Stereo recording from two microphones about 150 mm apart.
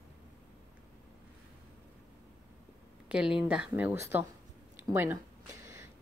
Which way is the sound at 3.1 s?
5° right (ahead or behind).